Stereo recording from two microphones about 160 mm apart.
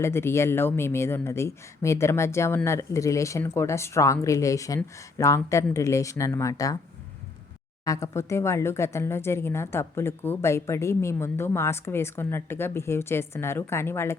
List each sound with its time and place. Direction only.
0.0 s a woman's voice: 15° left (ahead or behind)
7.9 s a woman's voice: 20° left (ahead or behind)